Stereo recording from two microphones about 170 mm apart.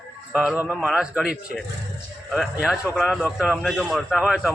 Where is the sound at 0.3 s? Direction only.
10° right (ahead or behind).